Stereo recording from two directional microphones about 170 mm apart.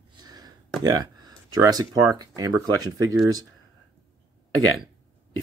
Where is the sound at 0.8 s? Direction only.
20° right (ahead or behind).